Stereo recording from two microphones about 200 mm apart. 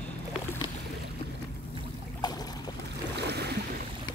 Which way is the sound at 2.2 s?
20° left (ahead or behind).